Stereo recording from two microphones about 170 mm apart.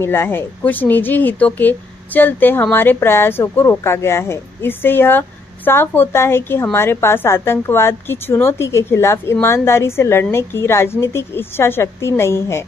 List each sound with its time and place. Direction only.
0.0 s speech: 15° left (ahead or behind)